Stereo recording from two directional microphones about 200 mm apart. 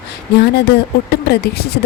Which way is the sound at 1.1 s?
55° left (ahead or behind).